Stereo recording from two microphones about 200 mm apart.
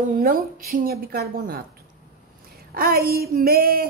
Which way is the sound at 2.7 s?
50° right (ahead or behind).